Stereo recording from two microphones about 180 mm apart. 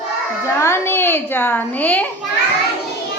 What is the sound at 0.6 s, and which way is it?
Child singing, 15° left (ahead or behind).